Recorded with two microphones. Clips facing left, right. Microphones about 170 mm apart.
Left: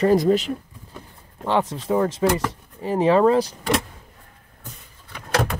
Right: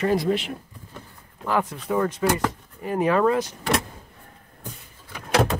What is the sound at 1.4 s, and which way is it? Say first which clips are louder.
Speech: left 3 dB; 25° left (ahead or behind).